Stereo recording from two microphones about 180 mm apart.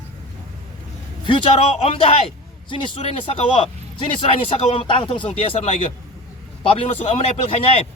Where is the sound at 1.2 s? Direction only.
30° left (ahead or behind).